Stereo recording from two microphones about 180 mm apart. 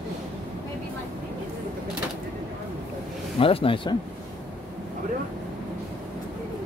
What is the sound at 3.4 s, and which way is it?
Speech, 30° left (ahead or behind).